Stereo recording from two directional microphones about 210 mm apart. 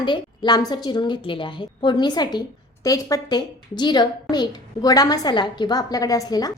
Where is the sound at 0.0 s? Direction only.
20° left (ahead or behind).